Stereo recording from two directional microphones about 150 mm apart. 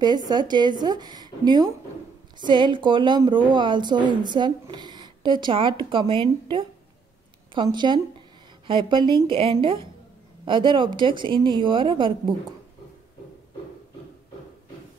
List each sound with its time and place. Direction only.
0.3 s a woman's voice: 30° right (ahead or behind)
7.6 s a woman's voice: 30° right (ahead or behind)